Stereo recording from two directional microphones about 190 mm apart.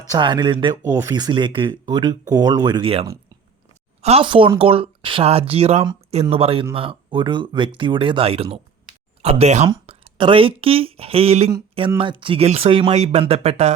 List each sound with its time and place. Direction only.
0.1 s speech: 25° right (ahead or behind)